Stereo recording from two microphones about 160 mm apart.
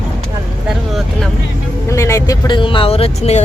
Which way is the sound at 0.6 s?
Centre (ahead or behind).